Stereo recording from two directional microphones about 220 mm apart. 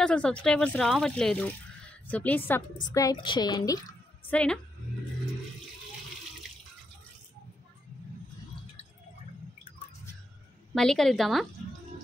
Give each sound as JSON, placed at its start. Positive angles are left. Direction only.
{"t": 0.0, "sound": "a woman's voice", "side_deg": 5}
{"t": 4.3, "sound": "speech", "side_deg": 5}
{"t": 10.7, "sound": "speech", "side_deg": 0}